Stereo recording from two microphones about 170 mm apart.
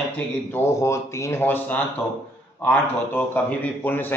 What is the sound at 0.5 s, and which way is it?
A man's voice, 15° left (ahead or behind).